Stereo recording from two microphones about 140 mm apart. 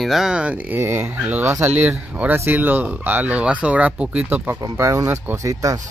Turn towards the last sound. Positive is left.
turn(degrees=-25)  # may be behind; listen again after turning